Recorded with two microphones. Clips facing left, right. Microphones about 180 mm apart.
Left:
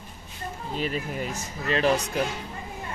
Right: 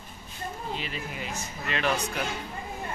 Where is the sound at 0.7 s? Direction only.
45° left (ahead or behind).